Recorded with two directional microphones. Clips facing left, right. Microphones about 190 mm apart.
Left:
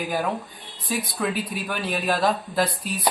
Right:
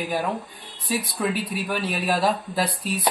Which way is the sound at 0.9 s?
Centre (ahead or behind).